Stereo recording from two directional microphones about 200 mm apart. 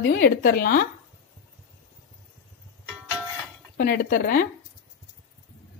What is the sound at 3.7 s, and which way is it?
Speech, 45° left (ahead or behind).